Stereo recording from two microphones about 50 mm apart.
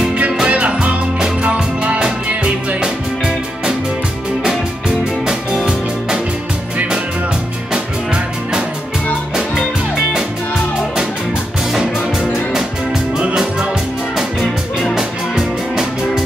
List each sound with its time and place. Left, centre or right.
0.4 s music: right
2.8 s music: centre
7.7 s music: centre
11.7 s music: centre
14.1 s music: centre
15.0 s music: centre